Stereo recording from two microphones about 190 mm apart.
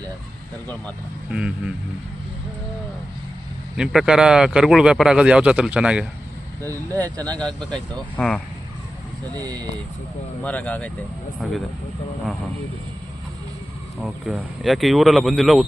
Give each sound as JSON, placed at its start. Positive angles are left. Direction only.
{"t": 1.3, "sound": "a man's voice", "side_deg": -5}
{"t": 3.8, "sound": "a man's voice", "side_deg": -5}
{"t": 6.9, "sound": "speech", "side_deg": 10}
{"t": 9.4, "sound": "speech", "side_deg": -20}
{"t": 10.4, "sound": "a man's voice", "side_deg": 10}
{"t": 14.0, "sound": "a man's voice", "side_deg": 0}